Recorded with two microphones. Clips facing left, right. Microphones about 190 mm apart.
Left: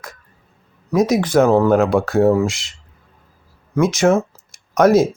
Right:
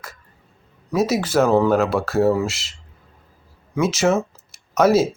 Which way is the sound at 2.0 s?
Centre (ahead or behind).